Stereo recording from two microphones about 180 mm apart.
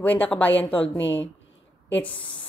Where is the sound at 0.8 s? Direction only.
90° left.